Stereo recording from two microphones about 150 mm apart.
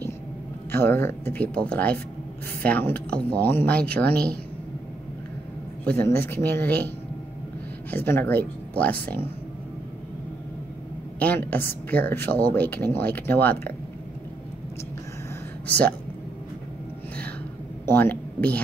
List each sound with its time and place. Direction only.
0.7 s speech: 15° left (ahead or behind)
4.1 s a woman's voice: 90° right
5.9 s speech: 15° left (ahead or behind)
7.9 s speech: 15° left (ahead or behind)
11.1 s speech: 10° left (ahead or behind)
17.8 s a man's voice: 10° left (ahead or behind)